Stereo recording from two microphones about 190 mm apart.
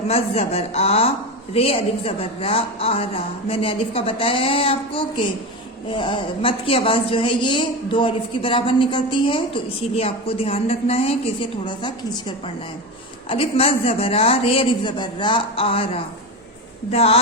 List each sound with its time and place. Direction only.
0.1 s a man's voice: 35° left (ahead or behind)
13.2 s a woman's voice: 30° left (ahead or behind)